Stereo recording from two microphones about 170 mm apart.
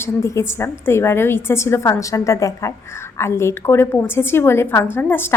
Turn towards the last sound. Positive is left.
turn(degrees=10)  # may be behind; listen again after turning